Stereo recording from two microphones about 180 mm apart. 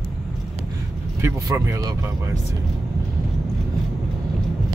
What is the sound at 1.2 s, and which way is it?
Speech, 15° right (ahead or behind).